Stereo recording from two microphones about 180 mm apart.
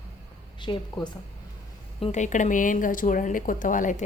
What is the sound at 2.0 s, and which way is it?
A woman's voice, 40° left (ahead or behind).